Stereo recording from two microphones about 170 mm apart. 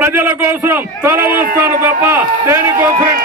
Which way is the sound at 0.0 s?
15° right (ahead or behind).